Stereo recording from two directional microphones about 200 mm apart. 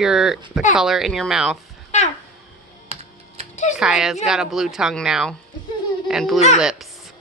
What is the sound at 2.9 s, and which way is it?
Typing, 30° right (ahead or behind).